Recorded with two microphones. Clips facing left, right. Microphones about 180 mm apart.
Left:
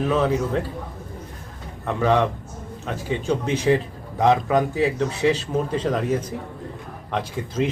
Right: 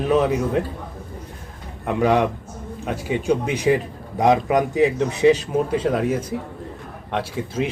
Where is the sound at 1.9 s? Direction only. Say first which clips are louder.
Right 2 dB; 15° right (ahead or behind).